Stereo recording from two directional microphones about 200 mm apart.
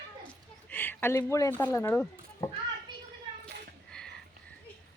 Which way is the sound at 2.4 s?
15° left (ahead or behind).